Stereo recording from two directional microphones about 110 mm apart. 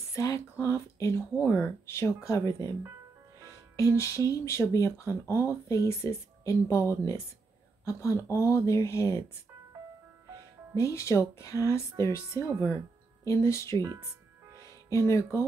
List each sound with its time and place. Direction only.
0.1 s speech: 30° left (ahead or behind)
3.7 s speech: 25° left (ahead or behind)
10.7 s speech: 25° left (ahead or behind)
14.9 s speech: 25° left (ahead or behind)